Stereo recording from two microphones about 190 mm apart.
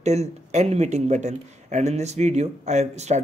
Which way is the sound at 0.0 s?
35° right (ahead or behind).